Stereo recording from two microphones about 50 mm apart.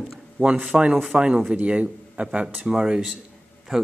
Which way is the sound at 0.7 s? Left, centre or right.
Centre.